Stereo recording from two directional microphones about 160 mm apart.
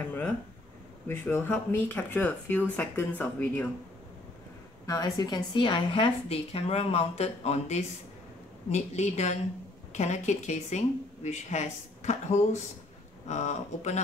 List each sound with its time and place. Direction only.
1.0 s speech: 15° left (ahead or behind)
4.8 s a woman's voice: 20° left (ahead or behind); by 14.0 s 45° left (ahead or behind)